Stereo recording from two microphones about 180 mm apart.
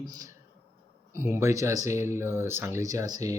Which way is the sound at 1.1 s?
15° right (ahead or behind).